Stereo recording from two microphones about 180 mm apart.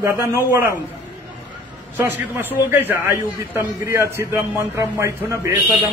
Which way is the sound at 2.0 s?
10° right (ahead or behind).